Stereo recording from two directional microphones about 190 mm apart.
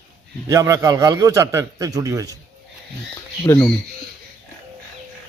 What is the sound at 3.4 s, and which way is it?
Speech, 20° left (ahead or behind).